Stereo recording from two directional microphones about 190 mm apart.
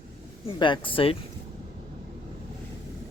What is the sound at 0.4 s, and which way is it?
Speech, 25° left (ahead or behind).